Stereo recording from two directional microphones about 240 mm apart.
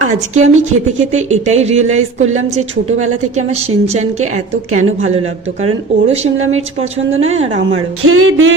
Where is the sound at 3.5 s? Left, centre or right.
Right.